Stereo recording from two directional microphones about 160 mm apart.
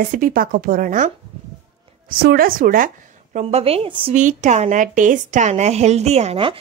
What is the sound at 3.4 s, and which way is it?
Speech, 40° right (ahead or behind).